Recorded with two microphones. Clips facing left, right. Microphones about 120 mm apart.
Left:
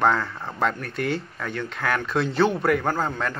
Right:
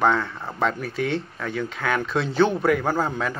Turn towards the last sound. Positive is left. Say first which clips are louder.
# right 1 dB
turn(degrees=-5)  # may be behind; listen again after turning